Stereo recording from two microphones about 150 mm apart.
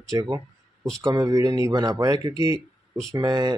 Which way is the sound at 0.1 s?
25° right (ahead or behind).